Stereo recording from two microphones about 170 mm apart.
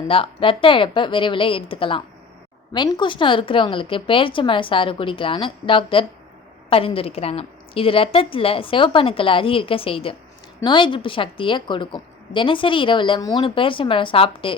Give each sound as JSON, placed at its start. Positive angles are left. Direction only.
{"t": 0.1, "sound": "a woman's voice", "side_deg": 30}